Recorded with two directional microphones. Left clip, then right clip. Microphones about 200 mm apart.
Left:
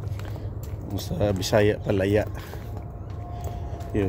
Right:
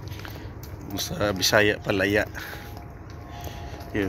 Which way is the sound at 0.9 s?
10° left (ahead or behind).